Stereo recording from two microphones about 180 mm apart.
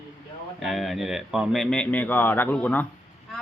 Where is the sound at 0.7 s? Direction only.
Centre (ahead or behind).